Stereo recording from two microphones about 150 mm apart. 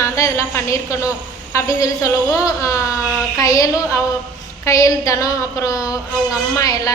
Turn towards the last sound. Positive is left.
turn(degrees=20)  # may be behind; listen again after turning